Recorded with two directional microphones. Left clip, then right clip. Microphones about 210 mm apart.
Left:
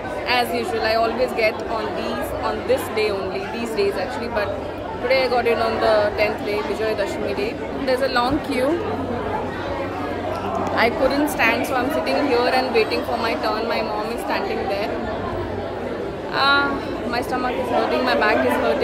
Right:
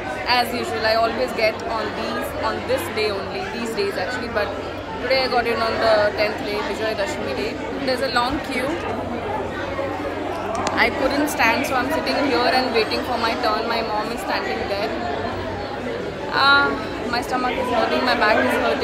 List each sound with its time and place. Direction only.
0.3 s a woman's voice: 10° left (ahead or behind)
5.0 s a woman's voice: 10° left (ahead or behind)
7.8 s a woman's voice: 15° left (ahead or behind)
10.8 s a woman's voice: 15° left (ahead or behind)
16.3 s a woman's voice: 10° left (ahead or behind)